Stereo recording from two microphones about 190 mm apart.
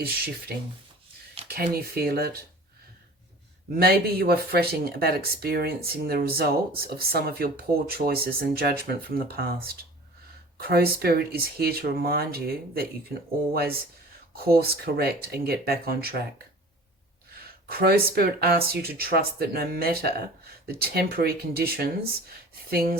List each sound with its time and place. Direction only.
0.0 s speech: 55° right (ahead or behind)
3.8 s speech: 55° right (ahead or behind)
17.3 s speech: 55° right (ahead or behind)